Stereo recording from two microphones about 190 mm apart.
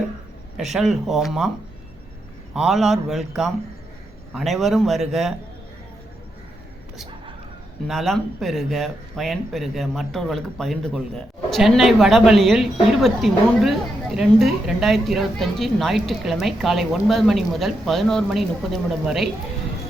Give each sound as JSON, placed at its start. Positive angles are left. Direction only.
{"t": 0.5, "sound": "a woman's voice", "side_deg": 0}
{"t": 2.5, "sound": "a woman's voice", "side_deg": 0}
{"t": 7.9, "sound": "a woman's voice", "side_deg": 0}